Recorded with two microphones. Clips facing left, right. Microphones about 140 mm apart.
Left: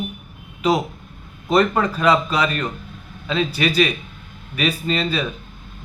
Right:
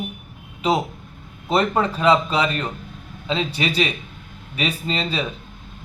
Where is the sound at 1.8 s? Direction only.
25° right (ahead or behind).